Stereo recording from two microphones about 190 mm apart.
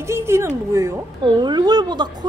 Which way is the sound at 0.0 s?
15° right (ahead or behind).